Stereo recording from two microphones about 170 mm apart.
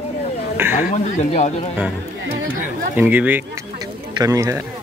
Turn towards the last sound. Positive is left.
turn(degrees=-20)  # may be behind; listen again after turning